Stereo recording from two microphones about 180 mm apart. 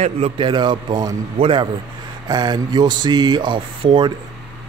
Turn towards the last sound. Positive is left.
turn(degrees=-25)  # may be behind; listen again after turning